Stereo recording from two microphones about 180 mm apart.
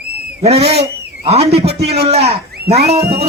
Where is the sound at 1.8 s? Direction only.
60° right (ahead or behind).